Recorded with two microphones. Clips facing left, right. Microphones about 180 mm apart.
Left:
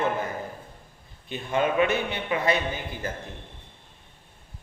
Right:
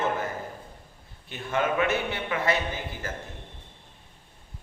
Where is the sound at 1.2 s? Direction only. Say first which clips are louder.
Left 2 dB; 20° left (ahead or behind).